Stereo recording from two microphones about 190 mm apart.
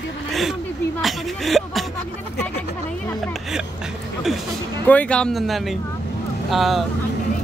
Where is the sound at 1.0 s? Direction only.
Centre (ahead or behind).